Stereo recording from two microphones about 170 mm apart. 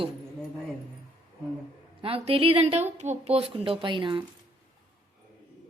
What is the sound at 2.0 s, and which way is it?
A woman's voice, 35° right (ahead or behind).